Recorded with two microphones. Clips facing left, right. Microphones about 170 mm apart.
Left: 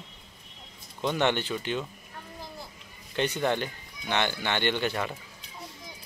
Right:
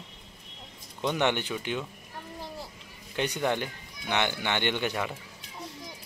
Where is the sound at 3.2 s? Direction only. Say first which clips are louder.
Left 1 dB; 10° right (ahead or behind).